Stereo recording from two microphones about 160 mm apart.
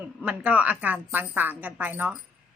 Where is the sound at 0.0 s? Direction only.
10° right (ahead or behind).